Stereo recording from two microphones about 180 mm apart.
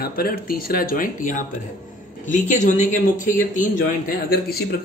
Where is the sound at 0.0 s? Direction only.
55° left (ahead or behind).